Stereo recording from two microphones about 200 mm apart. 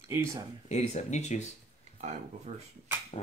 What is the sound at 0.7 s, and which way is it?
Speech, 35° left (ahead or behind).